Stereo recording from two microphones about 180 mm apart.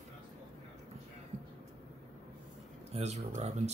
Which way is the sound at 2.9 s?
35° right (ahead or behind).